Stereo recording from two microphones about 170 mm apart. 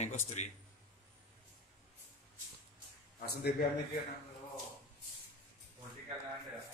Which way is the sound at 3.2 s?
70° left (ahead or behind).